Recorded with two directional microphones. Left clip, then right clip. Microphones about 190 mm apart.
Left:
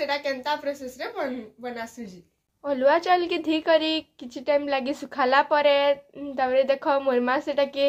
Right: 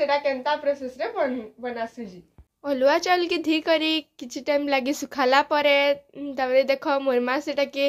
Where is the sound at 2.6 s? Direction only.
40° right (ahead or behind).